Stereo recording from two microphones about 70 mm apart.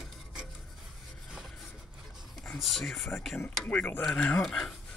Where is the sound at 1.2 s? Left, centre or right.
Centre.